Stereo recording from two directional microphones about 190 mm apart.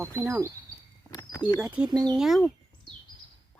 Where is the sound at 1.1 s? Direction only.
20° left (ahead or behind).